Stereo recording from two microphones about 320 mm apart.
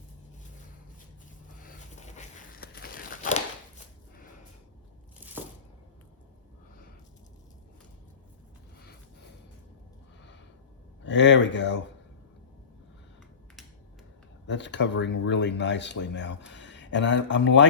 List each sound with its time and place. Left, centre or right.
1.6 s crumpling: left
5.2 s a sound: centre
11.0 s speech: left
14.4 s speech: left